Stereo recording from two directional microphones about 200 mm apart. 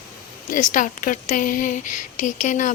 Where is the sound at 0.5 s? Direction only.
40° left (ahead or behind).